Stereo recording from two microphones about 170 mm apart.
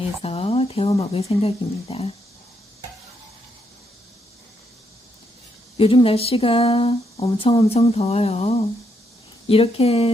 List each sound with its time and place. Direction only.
0.2 s speech: 35° left (ahead or behind)
5.7 s speech: 30° left (ahead or behind)